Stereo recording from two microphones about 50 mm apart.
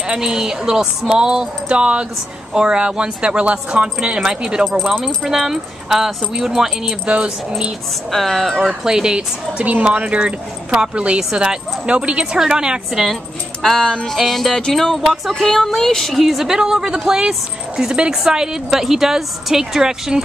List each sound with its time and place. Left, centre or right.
0.1 s speech: centre
8.1 s music: centre
8.8 s speech: centre
13.0 s speech: centre
14.1 s music: centre
16.2 s speech: centre